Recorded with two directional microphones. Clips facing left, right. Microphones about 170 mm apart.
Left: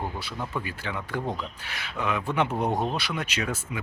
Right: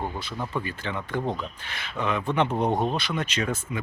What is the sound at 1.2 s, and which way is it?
Speech, 20° right (ahead or behind).